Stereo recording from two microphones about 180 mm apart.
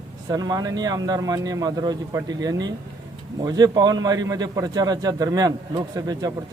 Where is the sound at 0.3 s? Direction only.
20° right (ahead or behind).